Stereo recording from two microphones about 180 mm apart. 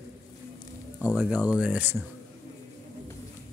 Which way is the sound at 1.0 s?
5° right (ahead or behind).